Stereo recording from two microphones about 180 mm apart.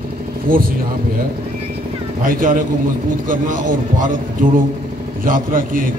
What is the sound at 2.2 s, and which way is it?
A man's voice, 50° right (ahead or behind).